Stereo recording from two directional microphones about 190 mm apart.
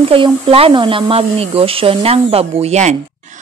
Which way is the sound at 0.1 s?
30° right (ahead or behind).